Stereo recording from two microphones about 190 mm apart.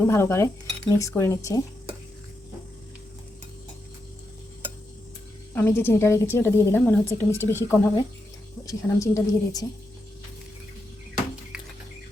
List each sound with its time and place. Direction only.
0.0 s a woman's voice: 15° left (ahead or behind)
5.5 s a woman's voice: 10° left (ahead or behind)